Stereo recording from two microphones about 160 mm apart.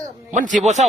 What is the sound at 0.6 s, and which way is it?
Speech, 45° right (ahead or behind).